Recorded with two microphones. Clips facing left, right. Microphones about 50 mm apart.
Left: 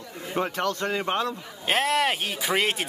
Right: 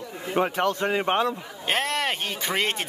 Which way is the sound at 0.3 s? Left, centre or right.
Centre.